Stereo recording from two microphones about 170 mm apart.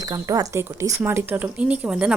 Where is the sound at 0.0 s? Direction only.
20° right (ahead or behind).